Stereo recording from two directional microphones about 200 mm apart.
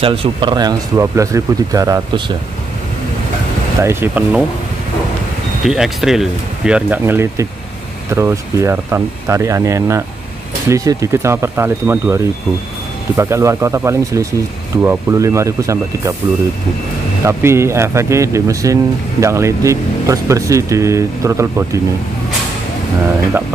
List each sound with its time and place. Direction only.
0.0 s speech: 25° right (ahead or behind)
3.8 s speech: 10° right (ahead or behind)
5.6 s speech: centre (ahead or behind)
17.2 s speech: 15° right (ahead or behind)